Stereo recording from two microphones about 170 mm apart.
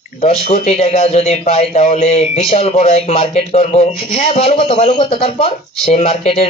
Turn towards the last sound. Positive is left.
turn(degrees=40)  # may be behind; listen again after turning